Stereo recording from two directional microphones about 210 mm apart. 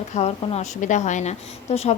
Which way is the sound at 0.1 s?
30° left (ahead or behind).